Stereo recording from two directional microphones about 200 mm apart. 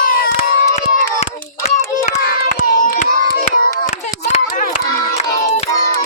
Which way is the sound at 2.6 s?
45° left (ahead or behind).